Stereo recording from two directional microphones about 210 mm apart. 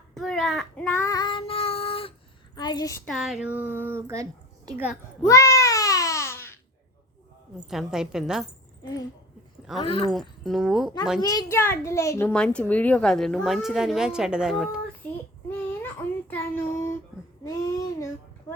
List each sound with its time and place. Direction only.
0.1 s child singing: centre (ahead or behind); by 2.1 s 25° left (ahead or behind)
2.6 s a woman's voice: 20° left (ahead or behind)
3.1 s speech: centre (ahead or behind)
5.2 s babbling: 15° left (ahead or behind)
7.7 s speech: centre (ahead or behind)
8.8 s a sound: 15° left (ahead or behind)
9.8 s speech: 25° left (ahead or behind)
10.1 s speech: centre (ahead or behind)
11.2 s a child's voice: 15° left (ahead or behind)
17.4 s child singing: 15° left (ahead or behind)
18.5 s a sound: 10° left (ahead or behind)